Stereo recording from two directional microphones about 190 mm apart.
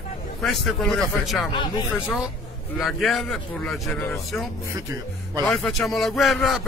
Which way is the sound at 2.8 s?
Centre (ahead or behind).